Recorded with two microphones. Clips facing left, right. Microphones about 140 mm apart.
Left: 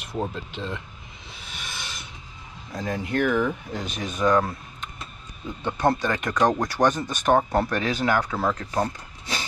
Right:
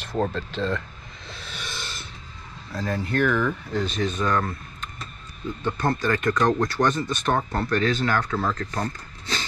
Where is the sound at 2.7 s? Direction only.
15° left (ahead or behind).